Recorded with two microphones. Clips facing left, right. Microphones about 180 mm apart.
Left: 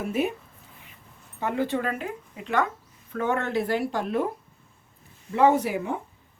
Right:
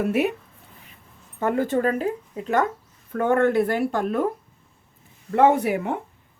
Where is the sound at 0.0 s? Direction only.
70° right (ahead or behind).